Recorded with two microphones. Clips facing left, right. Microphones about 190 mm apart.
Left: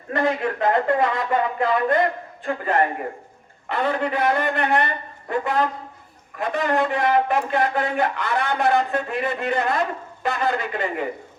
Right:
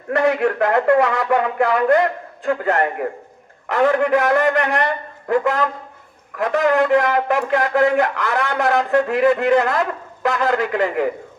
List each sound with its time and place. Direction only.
0.1 s a man's voice: 70° right (ahead or behind)